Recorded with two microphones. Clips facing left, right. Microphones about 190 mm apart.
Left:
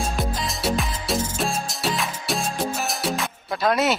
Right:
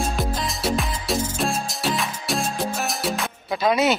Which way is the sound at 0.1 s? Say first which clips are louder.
Right 1 dB; centre (ahead or behind).